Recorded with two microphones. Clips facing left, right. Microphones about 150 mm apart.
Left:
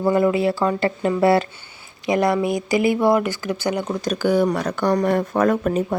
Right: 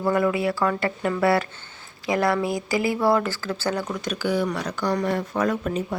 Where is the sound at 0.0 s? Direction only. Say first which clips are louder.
Left 4 dB; 25° left (ahead or behind).